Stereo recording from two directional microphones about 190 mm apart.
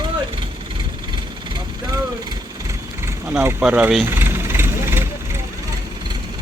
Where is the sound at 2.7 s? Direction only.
10° right (ahead or behind).